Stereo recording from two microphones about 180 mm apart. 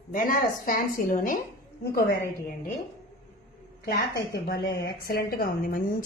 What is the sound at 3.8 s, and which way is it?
A woman's voice, 60° left (ahead or behind).